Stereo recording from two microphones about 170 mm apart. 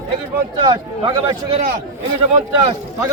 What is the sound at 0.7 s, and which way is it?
Speech, 30° right (ahead or behind).